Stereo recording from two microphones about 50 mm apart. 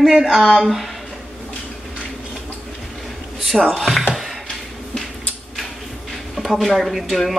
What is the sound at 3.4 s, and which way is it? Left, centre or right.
Speech, centre.